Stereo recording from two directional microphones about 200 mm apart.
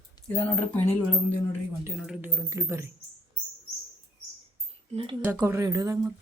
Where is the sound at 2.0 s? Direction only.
5° right (ahead or behind).